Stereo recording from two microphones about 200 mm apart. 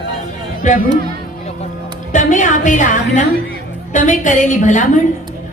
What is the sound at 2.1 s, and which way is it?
A woman's voice, 40° left (ahead or behind).